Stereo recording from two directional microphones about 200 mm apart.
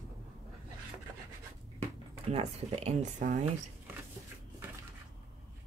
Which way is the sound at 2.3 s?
30° right (ahead or behind).